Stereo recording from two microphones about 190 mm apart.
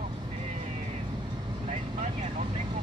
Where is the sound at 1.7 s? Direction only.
40° right (ahead or behind).